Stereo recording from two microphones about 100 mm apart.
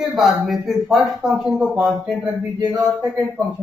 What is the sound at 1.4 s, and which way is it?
Speech, 15° right (ahead or behind).